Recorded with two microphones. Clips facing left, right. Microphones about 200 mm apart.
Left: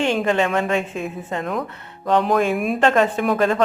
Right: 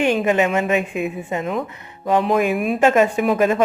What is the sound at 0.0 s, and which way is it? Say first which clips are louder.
Speech: right 2 dB; 10° right (ahead or behind).